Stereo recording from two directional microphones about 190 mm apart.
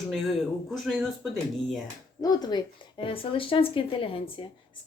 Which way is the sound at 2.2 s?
20° left (ahead or behind).